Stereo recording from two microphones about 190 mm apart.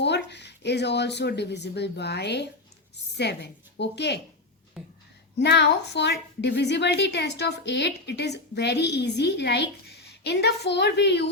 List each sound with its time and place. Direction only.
0.0 s a woman's voice: 65° left (ahead or behind)
4.8 s speech: 5° right (ahead or behind)
5.4 s a woman's voice: 60° left (ahead or behind)